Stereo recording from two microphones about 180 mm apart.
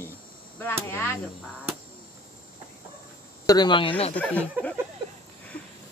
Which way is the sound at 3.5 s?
25° left (ahead or behind).